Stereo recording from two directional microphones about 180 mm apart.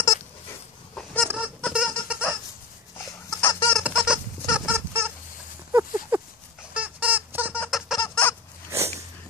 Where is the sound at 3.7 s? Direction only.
5° right (ahead or behind).